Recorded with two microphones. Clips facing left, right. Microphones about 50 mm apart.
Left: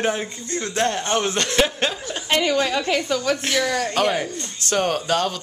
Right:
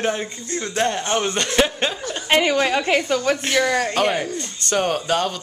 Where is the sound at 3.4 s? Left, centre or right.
Centre.